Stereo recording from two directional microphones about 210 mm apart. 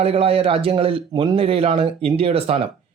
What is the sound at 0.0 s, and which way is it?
Speech, 25° right (ahead or behind).